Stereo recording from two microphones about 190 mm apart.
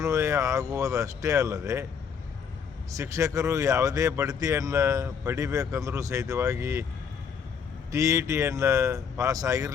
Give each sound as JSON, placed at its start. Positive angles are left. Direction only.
{"t": 0.0, "sound": "speech", "side_deg": -15}
{"t": 2.9, "sound": "speech", "side_deg": -15}
{"t": 7.9, "sound": "speech", "side_deg": -15}